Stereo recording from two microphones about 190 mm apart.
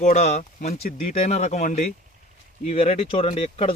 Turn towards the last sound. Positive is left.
turn(degrees=30)  # may be behind; listen again after turning